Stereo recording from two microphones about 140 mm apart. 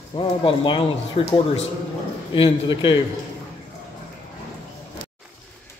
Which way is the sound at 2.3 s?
35° left (ahead or behind).